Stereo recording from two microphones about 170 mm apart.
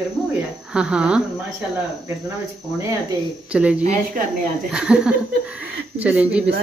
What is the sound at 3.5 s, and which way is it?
Speech, 5° right (ahead or behind).